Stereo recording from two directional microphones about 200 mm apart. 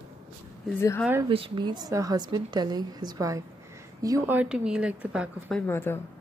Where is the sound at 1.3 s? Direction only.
25° right (ahead or behind); by 5.6 s 5° right (ahead or behind).